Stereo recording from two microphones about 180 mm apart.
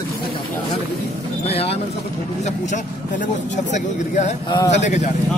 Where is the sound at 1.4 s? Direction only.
35° left (ahead or behind).